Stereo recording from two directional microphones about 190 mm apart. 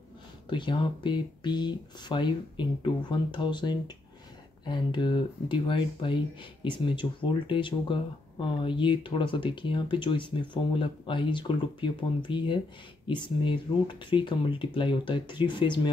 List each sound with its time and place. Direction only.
0.5 s speech: 25° left (ahead or behind)